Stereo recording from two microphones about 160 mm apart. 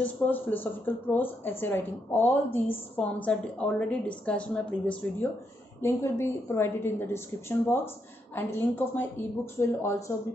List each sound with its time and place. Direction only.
0.0 s speech: 10° left (ahead or behind)